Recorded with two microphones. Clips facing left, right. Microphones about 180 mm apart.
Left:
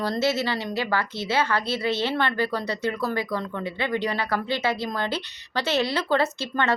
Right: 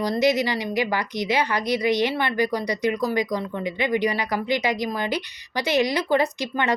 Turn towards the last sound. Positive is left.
turn(degrees=-15)  # may be behind; listen again after turning